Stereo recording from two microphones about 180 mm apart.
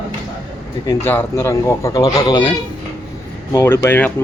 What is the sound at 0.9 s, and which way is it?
Speech, 15° left (ahead or behind).